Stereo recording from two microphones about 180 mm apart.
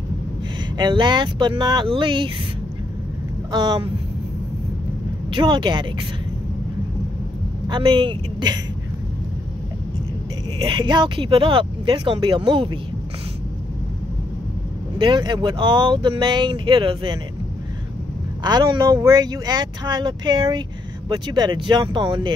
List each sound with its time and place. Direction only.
0.7 s speech: 25° right (ahead or behind)
3.5 s speech: 25° right (ahead or behind)
5.3 s speech: 25° right (ahead or behind)
7.6 s speech: 25° right (ahead or behind)
10.6 s speech: 25° right (ahead or behind)
15.0 s speech: 25° right (ahead or behind)
18.4 s speech: 20° right (ahead or behind)